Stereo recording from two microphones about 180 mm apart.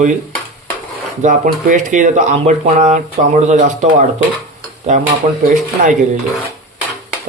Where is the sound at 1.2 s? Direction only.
45° right (ahead or behind).